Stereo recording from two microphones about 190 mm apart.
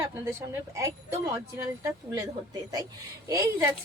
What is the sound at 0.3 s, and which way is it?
Speech, 15° right (ahead or behind).